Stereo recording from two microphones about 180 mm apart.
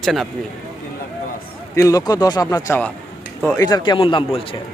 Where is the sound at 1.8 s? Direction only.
20° left (ahead or behind).